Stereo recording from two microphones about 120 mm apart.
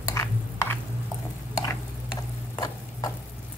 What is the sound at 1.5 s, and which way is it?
Stir, 30° left (ahead or behind).